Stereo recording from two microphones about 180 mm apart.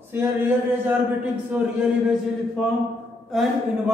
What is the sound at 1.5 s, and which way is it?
Speech, 5° right (ahead or behind).